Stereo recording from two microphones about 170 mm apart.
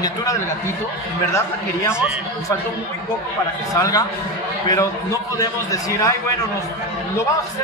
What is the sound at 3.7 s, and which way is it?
Speech, 20° left (ahead or behind).